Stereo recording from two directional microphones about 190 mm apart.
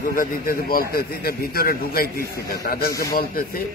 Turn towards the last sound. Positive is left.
turn(degrees=50)  # may be behind; listen again after turning